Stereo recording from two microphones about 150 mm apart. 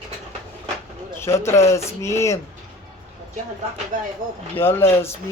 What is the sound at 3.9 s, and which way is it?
Speech, 60° right (ahead or behind).